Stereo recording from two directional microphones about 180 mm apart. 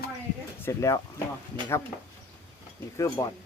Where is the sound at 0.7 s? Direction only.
20° left (ahead or behind).